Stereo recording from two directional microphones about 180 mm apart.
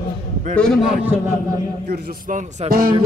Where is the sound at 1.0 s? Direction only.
10° right (ahead or behind).